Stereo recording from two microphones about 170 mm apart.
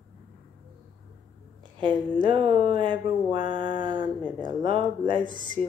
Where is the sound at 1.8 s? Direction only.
30° right (ahead or behind).